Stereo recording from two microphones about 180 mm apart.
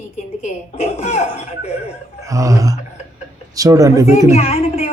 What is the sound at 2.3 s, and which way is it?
Speech, 20° right (ahead or behind).